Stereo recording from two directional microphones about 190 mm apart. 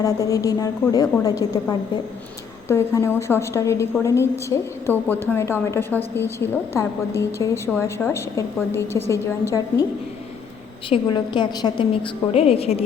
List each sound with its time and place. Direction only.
0.0 s a woman's voice: 15° left (ahead or behind)
10.8 s a woman's voice: 25° left (ahead or behind)